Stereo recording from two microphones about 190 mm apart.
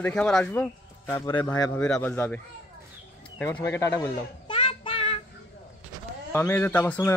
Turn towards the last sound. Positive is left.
turn(degrees=10)  # may be behind; listen again after turning